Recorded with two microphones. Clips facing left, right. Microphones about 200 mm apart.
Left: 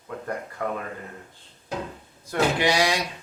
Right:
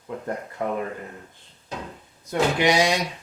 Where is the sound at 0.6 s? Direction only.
25° right (ahead or behind).